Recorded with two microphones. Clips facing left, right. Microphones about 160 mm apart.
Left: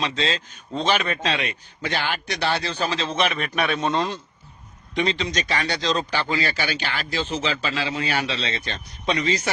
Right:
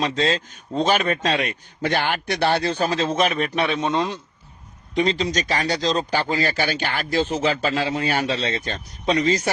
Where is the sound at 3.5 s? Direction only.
20° right (ahead or behind).